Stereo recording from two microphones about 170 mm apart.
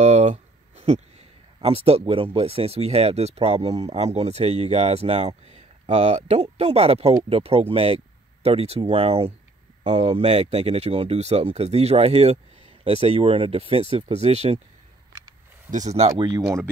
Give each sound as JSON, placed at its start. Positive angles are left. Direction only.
{"t": 0.0, "sound": "a sound", "side_deg": -45}
{"t": 1.6, "sound": "speech", "side_deg": -35}
{"t": 15.7, "sound": "speech", "side_deg": -45}
{"t": 16.2, "sound": "speech", "side_deg": -25}